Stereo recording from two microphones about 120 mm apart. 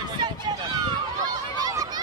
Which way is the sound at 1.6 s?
30° right (ahead or behind).